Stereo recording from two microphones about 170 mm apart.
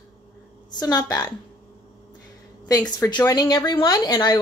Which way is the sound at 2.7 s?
25° left (ahead or behind).